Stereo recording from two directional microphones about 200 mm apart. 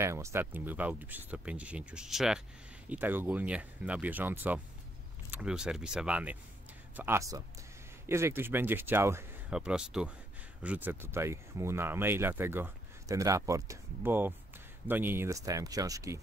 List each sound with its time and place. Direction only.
0.0 s speech: 15° right (ahead or behind)